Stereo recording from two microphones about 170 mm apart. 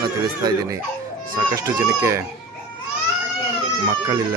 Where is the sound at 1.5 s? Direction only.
20° right (ahead or behind).